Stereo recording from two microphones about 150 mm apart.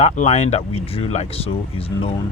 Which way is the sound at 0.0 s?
45° left (ahead or behind).